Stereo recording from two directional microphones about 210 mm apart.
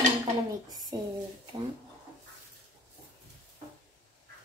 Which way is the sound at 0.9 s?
20° right (ahead or behind).